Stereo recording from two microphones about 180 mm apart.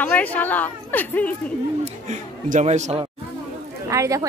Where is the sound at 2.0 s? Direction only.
40° right (ahead or behind).